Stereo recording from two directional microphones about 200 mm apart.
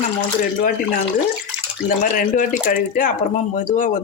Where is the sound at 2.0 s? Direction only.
40° left (ahead or behind).